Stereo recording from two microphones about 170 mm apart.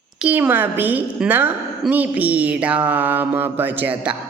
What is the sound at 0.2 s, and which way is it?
Speech, 10° right (ahead or behind).